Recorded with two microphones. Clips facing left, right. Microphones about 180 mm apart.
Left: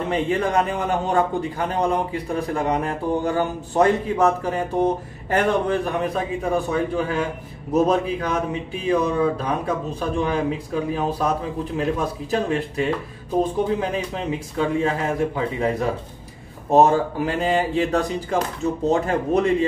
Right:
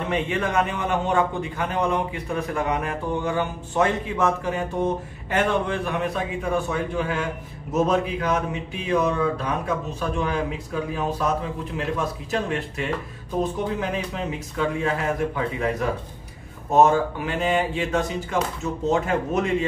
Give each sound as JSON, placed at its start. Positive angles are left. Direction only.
{"t": 0.1, "sound": "a man's voice", "side_deg": 35}